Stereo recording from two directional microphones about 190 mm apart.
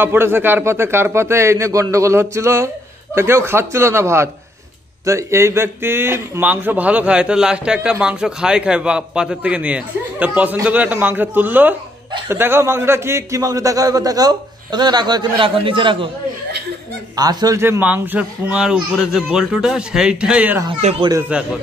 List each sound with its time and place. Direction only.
0.0 s a man's voice: 10° right (ahead or behind); by 16.1 s 25° right (ahead or behind)
17.1 s speech: 20° right (ahead or behind)
20.7 s speech: 30° right (ahead or behind)
21.3 s a man's voice: 5° right (ahead or behind)